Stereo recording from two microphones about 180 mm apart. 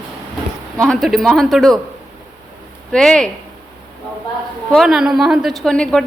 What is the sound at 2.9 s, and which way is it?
Speech, 5° left (ahead or behind).